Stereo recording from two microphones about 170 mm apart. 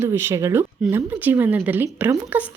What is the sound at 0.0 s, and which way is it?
A woman's voice, 15° right (ahead or behind).